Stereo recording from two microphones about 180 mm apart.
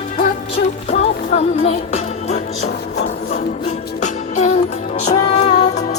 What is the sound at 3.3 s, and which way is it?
Music, 40° left (ahead or behind).